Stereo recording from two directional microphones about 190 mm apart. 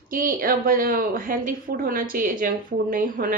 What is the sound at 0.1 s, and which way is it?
Speech, 45° right (ahead or behind).